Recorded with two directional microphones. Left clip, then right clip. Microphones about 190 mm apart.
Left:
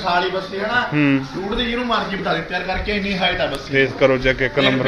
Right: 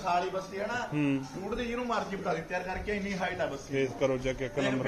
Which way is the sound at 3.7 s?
10° right (ahead or behind).